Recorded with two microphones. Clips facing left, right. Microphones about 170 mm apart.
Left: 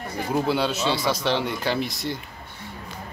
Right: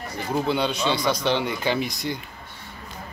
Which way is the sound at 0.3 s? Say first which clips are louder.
Even; 5° left (ahead or behind).